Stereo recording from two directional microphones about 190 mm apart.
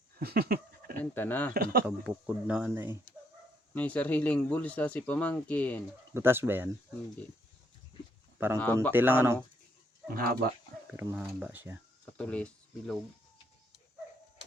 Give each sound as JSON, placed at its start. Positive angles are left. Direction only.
{"t": 0.2, "sound": "a sound", "side_deg": -55}
{"t": 1.1, "sound": "speech", "side_deg": 10}
{"t": 1.5, "sound": "speech", "side_deg": -55}
{"t": 2.0, "sound": "speech", "side_deg": -5}
{"t": 3.8, "sound": "speech", "side_deg": 10}
{"t": 6.1, "sound": "speech", "side_deg": -10}
{"t": 8.5, "sound": "speech", "side_deg": 10}
{"t": 8.9, "sound": "speech", "side_deg": -10}
{"t": 10.2, "sound": "speech", "side_deg": -55}
{"t": 10.9, "sound": "speech", "side_deg": -10}
{"t": 12.1, "sound": "speech", "side_deg": 5}